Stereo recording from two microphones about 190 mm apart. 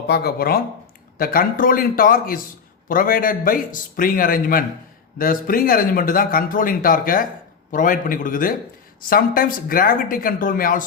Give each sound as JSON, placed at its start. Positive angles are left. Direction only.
{"t": 0.1, "sound": "a man's voice", "side_deg": 55}